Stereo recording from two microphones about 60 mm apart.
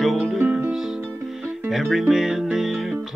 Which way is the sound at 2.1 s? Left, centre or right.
Centre.